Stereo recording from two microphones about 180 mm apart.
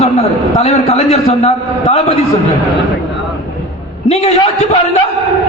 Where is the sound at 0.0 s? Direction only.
35° left (ahead or behind).